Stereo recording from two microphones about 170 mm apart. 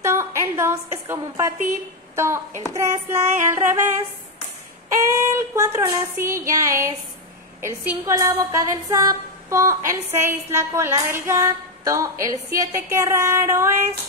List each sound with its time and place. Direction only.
0.0 s a sound: 15° right (ahead or behind)
2.1 s a woman's voice: 15° right (ahead or behind)
5.1 s a woman's voice: 15° right (ahead or behind)